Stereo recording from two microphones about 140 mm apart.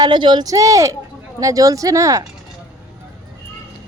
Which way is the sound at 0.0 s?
35° right (ahead or behind).